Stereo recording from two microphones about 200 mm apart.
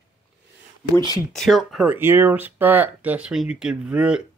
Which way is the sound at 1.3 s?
Centre (ahead or behind).